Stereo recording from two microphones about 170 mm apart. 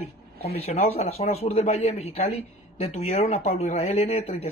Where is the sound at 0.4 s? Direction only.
35° left (ahead or behind).